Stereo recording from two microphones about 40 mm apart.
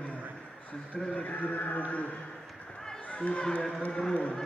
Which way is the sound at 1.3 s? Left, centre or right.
Left.